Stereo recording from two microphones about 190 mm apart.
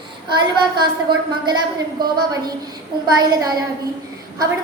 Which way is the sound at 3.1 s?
20° right (ahead or behind).